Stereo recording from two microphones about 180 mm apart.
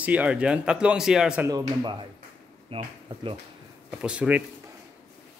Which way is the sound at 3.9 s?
5° right (ahead or behind).